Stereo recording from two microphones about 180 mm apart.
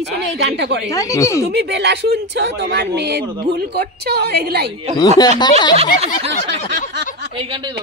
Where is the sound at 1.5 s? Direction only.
70° right (ahead or behind).